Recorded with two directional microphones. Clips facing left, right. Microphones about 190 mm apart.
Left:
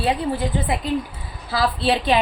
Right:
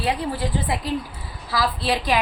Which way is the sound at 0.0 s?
25° left (ahead or behind).